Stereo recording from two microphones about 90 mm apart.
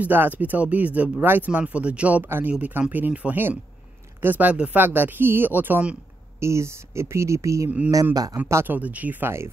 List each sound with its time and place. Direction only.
0.0 s speech: 20° right (ahead or behind)
6.4 s a man's voice: 30° right (ahead or behind)
8.5 s speech: 30° right (ahead or behind)
8.7 s speech: 15° right (ahead or behind)